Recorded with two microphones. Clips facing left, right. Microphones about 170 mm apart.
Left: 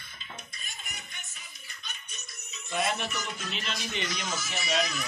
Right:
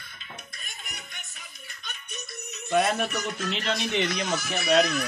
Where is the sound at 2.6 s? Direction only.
60° right (ahead or behind).